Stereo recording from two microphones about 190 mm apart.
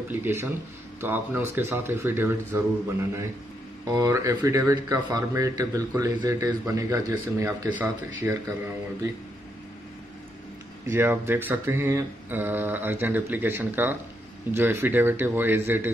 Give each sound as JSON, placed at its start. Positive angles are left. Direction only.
{"t": 0.1, "sound": "a man's voice", "side_deg": -10}
{"t": 10.9, "sound": "a man's voice", "side_deg": -10}